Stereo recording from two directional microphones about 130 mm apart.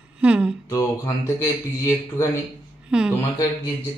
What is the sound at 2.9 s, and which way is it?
Speech, 5° right (ahead or behind).